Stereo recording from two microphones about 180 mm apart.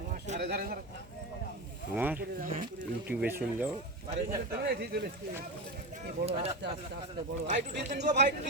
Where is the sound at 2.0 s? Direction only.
10° right (ahead or behind).